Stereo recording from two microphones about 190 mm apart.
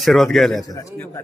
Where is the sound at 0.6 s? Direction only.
15° left (ahead or behind).